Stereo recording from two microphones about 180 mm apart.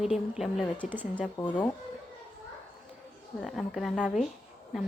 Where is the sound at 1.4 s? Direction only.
20° left (ahead or behind).